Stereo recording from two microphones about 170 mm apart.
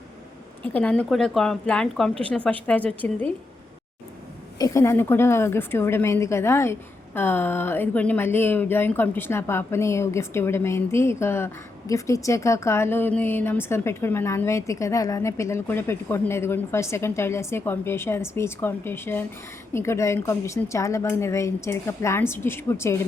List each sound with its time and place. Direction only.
0.6 s a woman's voice: 10° left (ahead or behind)
4.5 s a woman's voice: 20° left (ahead or behind)